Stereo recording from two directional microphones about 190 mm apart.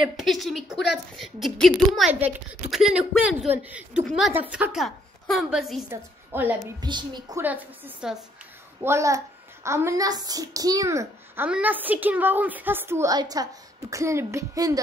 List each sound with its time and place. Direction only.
0.0 s a child's voice: centre (ahead or behind)
5.9 s a woman's voice: 10° right (ahead or behind)
6.8 s a woman's voice: 25° right (ahead or behind)
7.4 s a child's voice: 10° right (ahead or behind)